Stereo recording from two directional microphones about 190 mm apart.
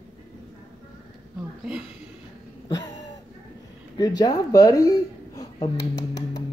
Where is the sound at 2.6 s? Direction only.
20° left (ahead or behind).